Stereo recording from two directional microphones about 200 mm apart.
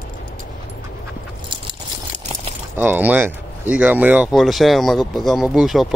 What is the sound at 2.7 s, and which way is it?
Speech, 10° right (ahead or behind).